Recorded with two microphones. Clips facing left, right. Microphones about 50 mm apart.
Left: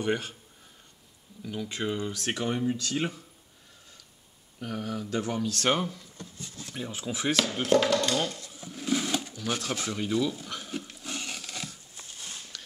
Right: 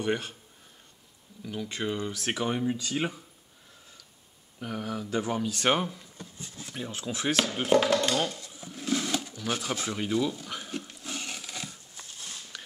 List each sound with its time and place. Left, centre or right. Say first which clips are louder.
0.0 s speech: even; centre
1.4 s speech: even; centre
4.6 s speech: even; centre
6.7 s speech: even; centre
10.5 s a sound: even; centre